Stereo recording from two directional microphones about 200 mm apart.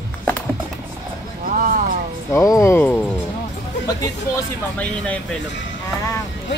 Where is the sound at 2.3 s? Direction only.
15° left (ahead or behind).